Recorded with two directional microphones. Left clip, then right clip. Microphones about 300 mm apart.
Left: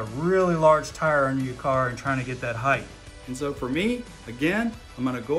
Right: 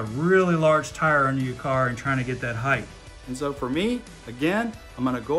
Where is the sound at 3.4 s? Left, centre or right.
Centre.